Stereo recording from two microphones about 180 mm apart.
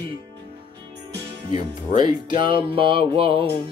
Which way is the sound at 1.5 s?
25° right (ahead or behind).